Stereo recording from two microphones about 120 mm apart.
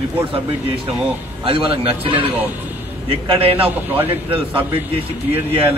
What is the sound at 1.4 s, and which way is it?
Speech, 50° right (ahead or behind).